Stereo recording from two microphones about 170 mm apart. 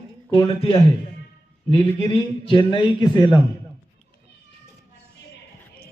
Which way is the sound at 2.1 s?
30° left (ahead or behind).